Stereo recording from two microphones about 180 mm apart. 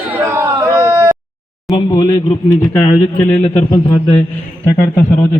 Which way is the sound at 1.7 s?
20° left (ahead or behind).